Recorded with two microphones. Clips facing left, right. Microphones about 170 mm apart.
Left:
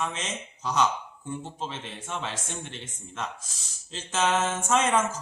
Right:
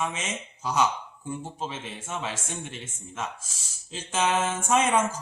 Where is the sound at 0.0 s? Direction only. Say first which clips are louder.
Right 1 dB; 10° right (ahead or behind).